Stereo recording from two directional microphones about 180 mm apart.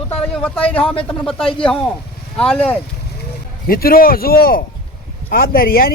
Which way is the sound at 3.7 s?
55° left (ahead or behind).